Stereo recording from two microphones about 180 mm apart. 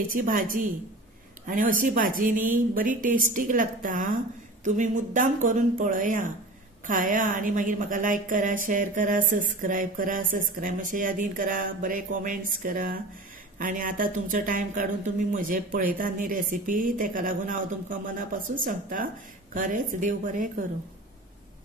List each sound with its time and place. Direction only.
0.1 s speech: 50° right (ahead or behind)